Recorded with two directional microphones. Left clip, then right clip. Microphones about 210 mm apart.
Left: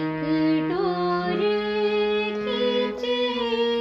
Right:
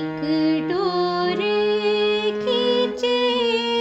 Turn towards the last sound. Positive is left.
turn(degrees=-50)  # may be behind; listen again after turning